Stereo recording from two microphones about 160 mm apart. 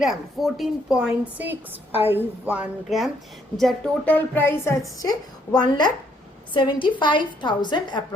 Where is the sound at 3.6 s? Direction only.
5° left (ahead or behind).